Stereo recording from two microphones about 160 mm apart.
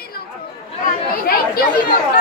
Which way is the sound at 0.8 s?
70° left (ahead or behind).